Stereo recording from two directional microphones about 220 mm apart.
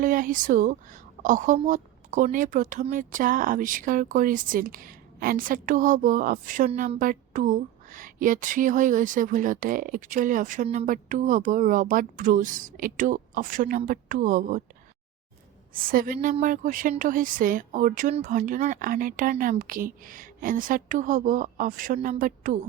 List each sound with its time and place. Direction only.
0.0 s a woman's voice: 40° right (ahead or behind)
15.7 s a woman's voice: 40° right (ahead or behind)